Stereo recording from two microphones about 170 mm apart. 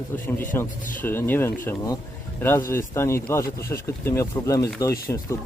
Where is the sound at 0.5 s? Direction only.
15° left (ahead or behind).